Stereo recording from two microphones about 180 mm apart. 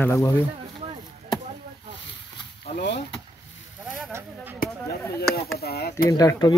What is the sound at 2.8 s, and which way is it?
Speech, 75° left (ahead or behind).